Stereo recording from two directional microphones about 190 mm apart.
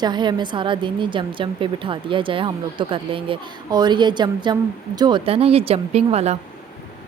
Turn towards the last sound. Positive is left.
turn(degrees=-35)  # may be behind; listen again after turning